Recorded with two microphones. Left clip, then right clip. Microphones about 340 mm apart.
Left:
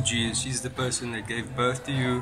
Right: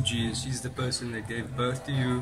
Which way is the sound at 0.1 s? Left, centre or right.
Centre.